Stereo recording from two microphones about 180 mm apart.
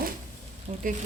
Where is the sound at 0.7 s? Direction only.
35° right (ahead or behind).